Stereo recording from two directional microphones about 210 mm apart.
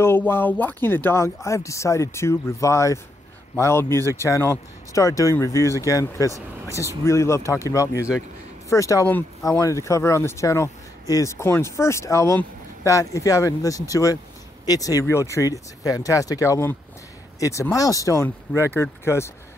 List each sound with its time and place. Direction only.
0.0 s speech: 10° left (ahead or behind)